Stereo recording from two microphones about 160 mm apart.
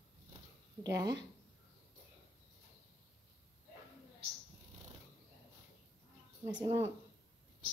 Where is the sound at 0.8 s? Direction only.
20° right (ahead or behind).